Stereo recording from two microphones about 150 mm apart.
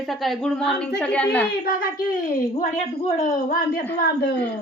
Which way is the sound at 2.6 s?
60° left (ahead or behind).